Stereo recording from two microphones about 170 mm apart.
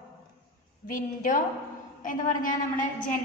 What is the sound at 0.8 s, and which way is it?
A woman's voice, 50° left (ahead or behind).